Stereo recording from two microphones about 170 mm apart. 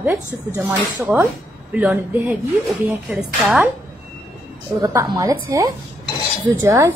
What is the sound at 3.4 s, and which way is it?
Speech, 5° right (ahead or behind).